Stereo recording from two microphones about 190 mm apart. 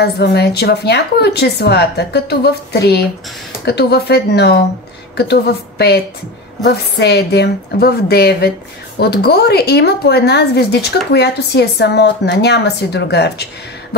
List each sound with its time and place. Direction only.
0.0 s a woman's voice: 60° left (ahead or behind)